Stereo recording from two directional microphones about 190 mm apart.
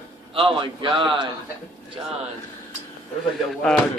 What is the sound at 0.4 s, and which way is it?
Speech, 25° right (ahead or behind).